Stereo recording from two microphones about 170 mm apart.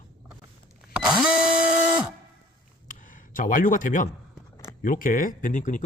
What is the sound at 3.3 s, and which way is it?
Speech, 55° left (ahead or behind).